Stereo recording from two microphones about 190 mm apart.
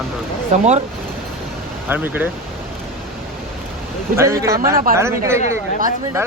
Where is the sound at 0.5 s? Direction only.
35° right (ahead or behind).